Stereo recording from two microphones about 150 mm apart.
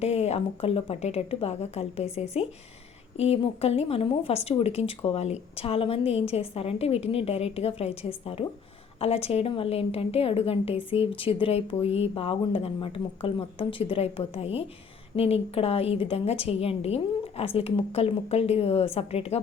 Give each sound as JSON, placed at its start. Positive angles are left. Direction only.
{"t": 0.0, "sound": "speech", "side_deg": 45}